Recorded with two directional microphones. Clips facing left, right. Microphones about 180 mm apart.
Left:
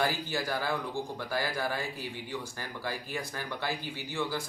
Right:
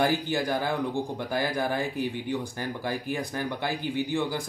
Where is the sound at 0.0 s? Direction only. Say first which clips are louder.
Right 6 dB; 20° right (ahead or behind).